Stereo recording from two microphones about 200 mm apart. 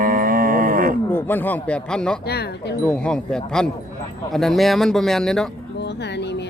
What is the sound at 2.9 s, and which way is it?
Speech, 5° left (ahead or behind).